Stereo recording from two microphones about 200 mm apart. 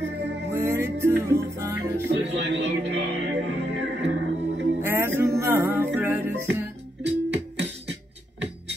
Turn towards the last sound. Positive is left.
turn(degrees=-60)  # may be behind; listen again after turning